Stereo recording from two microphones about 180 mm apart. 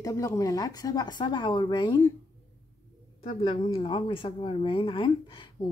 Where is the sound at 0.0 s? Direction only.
20° left (ahead or behind).